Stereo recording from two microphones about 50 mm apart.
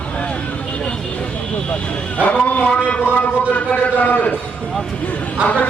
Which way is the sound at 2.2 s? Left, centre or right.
Left.